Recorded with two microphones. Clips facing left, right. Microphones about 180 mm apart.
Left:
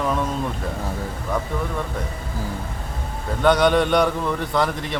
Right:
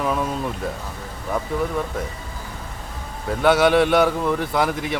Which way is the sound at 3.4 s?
5° right (ahead or behind).